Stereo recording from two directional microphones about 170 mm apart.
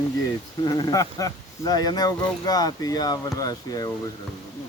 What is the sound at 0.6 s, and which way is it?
Speech, 25° left (ahead or behind).